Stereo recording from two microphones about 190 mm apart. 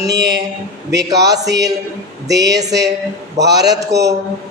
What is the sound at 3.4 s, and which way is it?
Speech, 35° right (ahead or behind).